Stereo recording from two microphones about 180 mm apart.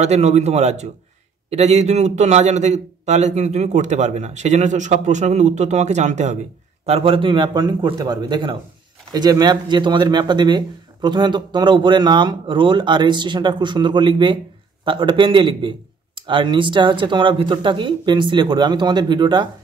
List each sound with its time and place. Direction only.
0.0 s a man's voice: 40° right (ahead or behind)